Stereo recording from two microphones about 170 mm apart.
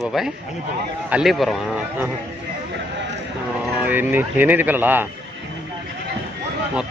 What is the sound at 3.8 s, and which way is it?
A man's voice, 10° right (ahead or behind).